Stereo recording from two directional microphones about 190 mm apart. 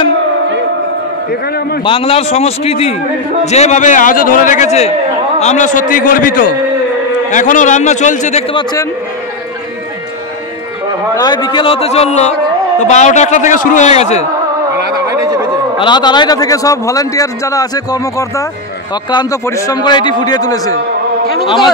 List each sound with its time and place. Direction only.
1.9 s a man's voice: 30° left (ahead or behind)
11.1 s a man's voice: 25° left (ahead or behind)
15.8 s a man's voice: 25° left (ahead or behind)